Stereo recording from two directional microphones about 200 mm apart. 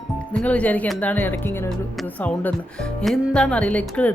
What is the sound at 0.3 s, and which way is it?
Speech, 5° left (ahead or behind).